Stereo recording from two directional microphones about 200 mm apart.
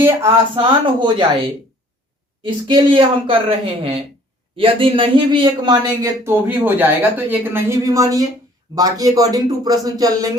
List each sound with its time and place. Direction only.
0.0 s a man's voice: 10° right (ahead or behind)
0.5 s a man's voice: 25° right (ahead or behind)